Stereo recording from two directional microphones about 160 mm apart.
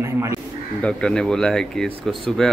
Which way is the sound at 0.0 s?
20° right (ahead or behind).